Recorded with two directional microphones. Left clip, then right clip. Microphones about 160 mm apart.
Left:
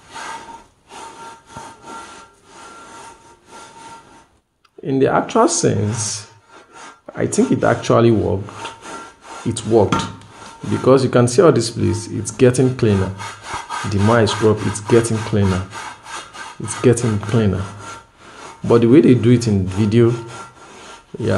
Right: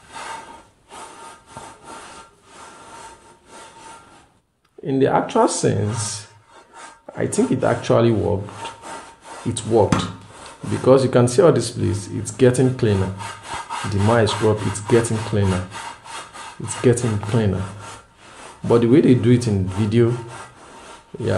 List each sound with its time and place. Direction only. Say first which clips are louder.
4.8 s speech: left 2 dB; 25° left (ahead or behind)
16.6 s speech: left 3 dB; 20° left (ahead or behind)
18.7 s speech: left 3 dB; 20° left (ahead or behind)